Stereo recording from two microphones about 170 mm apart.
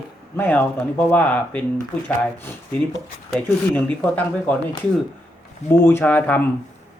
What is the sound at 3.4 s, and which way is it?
Speech, 10° left (ahead or behind).